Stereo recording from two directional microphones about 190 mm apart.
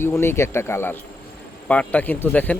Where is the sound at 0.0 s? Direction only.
15° left (ahead or behind).